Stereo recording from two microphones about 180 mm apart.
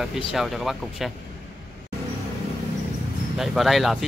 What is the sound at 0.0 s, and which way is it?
Speech, centre (ahead or behind).